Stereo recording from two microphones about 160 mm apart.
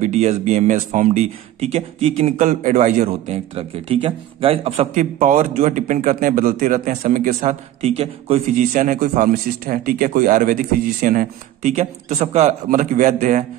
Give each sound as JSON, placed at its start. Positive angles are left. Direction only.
{"t": 0.0, "sound": "speech", "side_deg": -45}
{"t": 2.3, "sound": "a man's voice", "side_deg": -50}
{"t": 4.9, "sound": "speech", "side_deg": -50}
{"t": 7.3, "sound": "a man's voice", "side_deg": -40}
{"t": 8.5, "sound": "speech", "side_deg": -55}
{"t": 12.6, "sound": "speech", "side_deg": -55}